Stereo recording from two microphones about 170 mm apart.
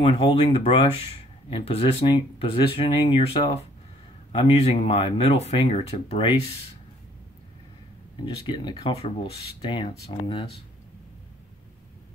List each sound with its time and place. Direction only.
0.0 s speech: 30° left (ahead or behind)
8.5 s speech: 30° left (ahead or behind)